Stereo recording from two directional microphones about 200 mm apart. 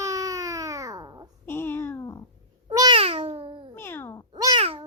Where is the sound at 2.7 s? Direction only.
20° right (ahead or behind).